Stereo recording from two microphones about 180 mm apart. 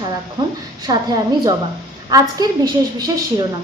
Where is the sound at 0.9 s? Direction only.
20° right (ahead or behind).